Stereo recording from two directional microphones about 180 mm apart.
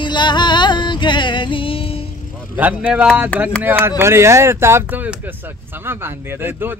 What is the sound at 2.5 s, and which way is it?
Speech, 10° right (ahead or behind).